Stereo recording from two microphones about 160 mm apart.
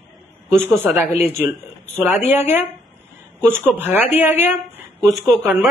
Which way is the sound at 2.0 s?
15° right (ahead or behind).